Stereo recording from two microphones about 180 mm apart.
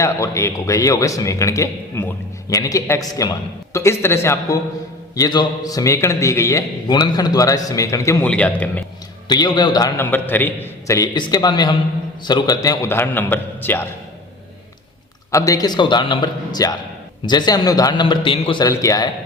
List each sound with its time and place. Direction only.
0.0 s a man's voice: 15° left (ahead or behind)
9.3 s a man's voice: 25° left (ahead or behind)
10.1 s a man's voice: 10° left (ahead or behind)
15.3 s a man's voice: 15° left (ahead or behind)
18.6 s a man's voice: 20° left (ahead or behind)